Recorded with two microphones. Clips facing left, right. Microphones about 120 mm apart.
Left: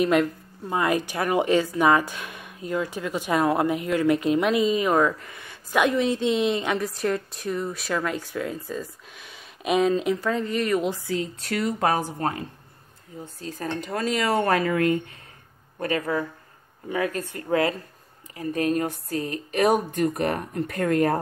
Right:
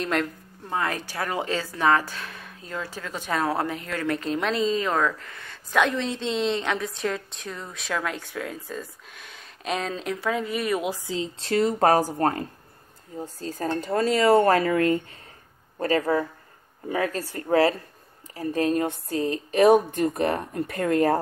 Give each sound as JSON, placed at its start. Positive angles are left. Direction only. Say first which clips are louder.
{"t": 0.0, "sound": "a woman's voice", "louder": "left 6 dB", "side_deg": 10}